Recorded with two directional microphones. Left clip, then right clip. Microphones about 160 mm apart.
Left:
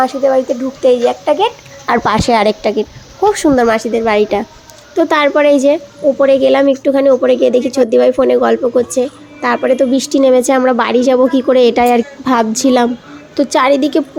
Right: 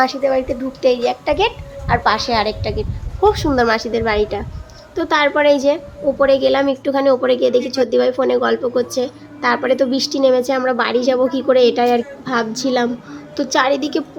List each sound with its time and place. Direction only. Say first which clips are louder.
0.0 s speech: left 4 dB; 10° left (ahead or behind)
1.9 s a woman's voice: left 4 dB; 50° left (ahead or behind)
3.2 s a woman's voice: left 4 dB; 35° left (ahead or behind)